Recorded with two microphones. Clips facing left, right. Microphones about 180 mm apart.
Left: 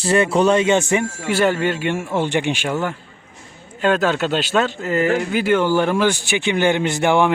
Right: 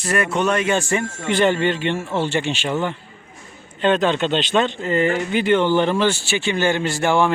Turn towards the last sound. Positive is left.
turn(degrees=15)  # may be behind; listen again after turning